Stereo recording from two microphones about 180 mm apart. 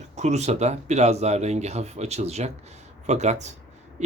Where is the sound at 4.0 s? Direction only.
40° right (ahead or behind).